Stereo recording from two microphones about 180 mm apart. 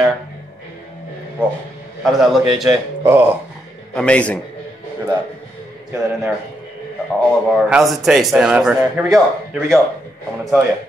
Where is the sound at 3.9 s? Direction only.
5° left (ahead or behind).